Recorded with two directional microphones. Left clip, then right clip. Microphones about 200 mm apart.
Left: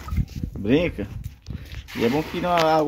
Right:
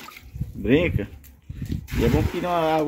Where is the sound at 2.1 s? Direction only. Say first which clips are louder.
Left 4 dB; 10° left (ahead or behind).